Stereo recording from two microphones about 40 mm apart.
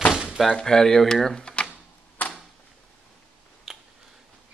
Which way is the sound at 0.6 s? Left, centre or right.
Centre.